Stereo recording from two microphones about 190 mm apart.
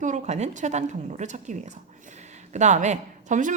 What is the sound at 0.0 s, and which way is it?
A woman's voice, 40° right (ahead or behind).